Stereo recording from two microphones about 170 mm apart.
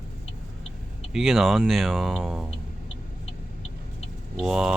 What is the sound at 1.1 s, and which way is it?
Speech, centre (ahead or behind).